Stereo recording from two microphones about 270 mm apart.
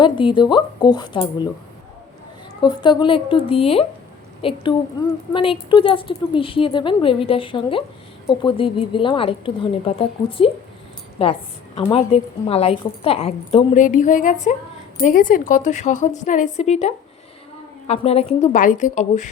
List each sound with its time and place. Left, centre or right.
0.0 s speech: centre
2.6 s a woman's voice: centre